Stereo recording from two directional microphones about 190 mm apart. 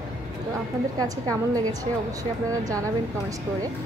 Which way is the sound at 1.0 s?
20° right (ahead or behind).